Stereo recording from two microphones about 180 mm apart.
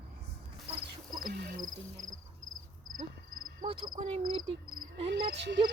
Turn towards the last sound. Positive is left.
turn(degrees=-75)  # may be behind; listen again after turning